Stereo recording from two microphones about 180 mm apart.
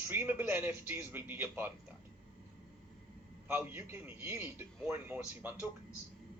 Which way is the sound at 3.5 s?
10° right (ahead or behind).